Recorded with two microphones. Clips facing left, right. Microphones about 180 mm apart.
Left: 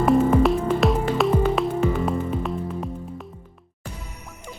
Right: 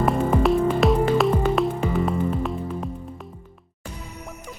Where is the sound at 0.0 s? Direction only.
Centre (ahead or behind).